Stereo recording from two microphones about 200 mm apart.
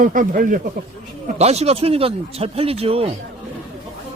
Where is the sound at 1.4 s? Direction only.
30° right (ahead or behind).